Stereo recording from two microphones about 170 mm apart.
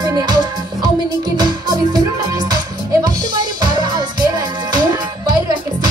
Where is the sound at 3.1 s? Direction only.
25° right (ahead or behind).